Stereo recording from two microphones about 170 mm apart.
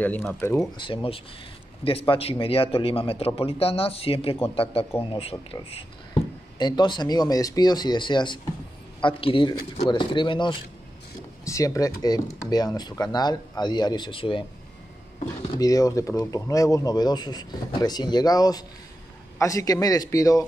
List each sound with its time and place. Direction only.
0.0 s speech: 10° left (ahead or behind)
0.7 s a man's voice: 30° left (ahead or behind)
11.4 s speech: 20° left (ahead or behind)
15.5 s speech: 20° left (ahead or behind)